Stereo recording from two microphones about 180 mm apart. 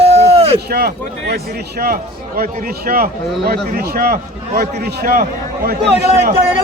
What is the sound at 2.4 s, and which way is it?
A man's voice, 55° right (ahead or behind).